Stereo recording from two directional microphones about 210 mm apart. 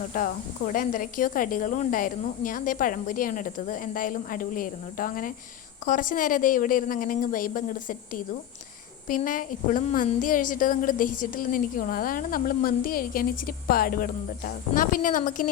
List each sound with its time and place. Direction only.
0.1 s a woman's voice: 40° left (ahead or behind)